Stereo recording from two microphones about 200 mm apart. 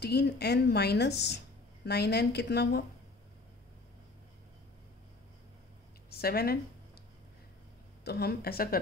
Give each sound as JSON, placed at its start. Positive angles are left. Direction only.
{"t": 0.0, "sound": "a woman's voice", "side_deg": 55}
{"t": 6.0, "sound": "speech", "side_deg": 50}
{"t": 8.0, "sound": "speech", "side_deg": 55}